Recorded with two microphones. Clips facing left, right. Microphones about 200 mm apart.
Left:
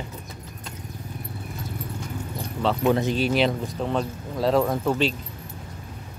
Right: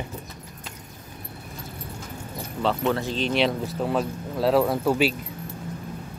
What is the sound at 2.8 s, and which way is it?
Speech, 15° left (ahead or behind).